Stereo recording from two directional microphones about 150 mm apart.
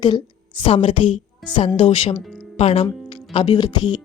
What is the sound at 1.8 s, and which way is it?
A woman's voice, 40° left (ahead or behind).